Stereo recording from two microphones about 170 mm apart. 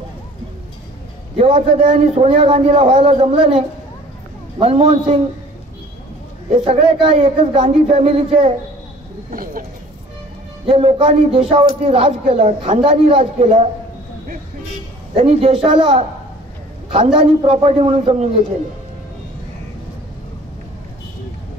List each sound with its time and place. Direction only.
1.4 s a man's voice: 35° right (ahead or behind)
6.5 s a man's voice: 35° right (ahead or behind)
9.3 s speech: 55° right (ahead or behind)
10.7 s a man's voice: 35° right (ahead or behind)
15.1 s a man's voice: 35° right (ahead or behind)